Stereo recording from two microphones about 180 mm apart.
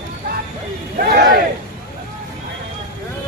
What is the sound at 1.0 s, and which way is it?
Speech, 55° right (ahead or behind).